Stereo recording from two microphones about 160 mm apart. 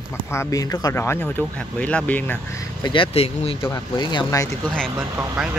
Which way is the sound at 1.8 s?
10° left (ahead or behind).